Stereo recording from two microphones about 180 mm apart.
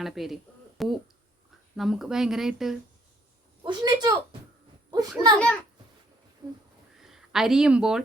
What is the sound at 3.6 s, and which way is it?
Speech, 25° right (ahead or behind).